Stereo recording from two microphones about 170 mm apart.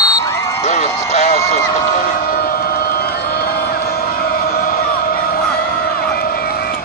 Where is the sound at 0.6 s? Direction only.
40° left (ahead or behind).